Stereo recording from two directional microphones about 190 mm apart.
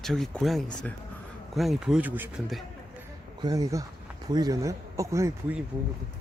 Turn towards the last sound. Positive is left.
turn(degrees=-15)  # may be behind; listen again after turning